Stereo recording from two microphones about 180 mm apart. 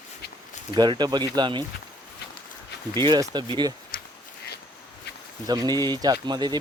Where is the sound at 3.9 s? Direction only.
50° left (ahead or behind).